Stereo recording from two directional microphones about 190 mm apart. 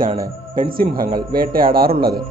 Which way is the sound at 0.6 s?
50° right (ahead or behind).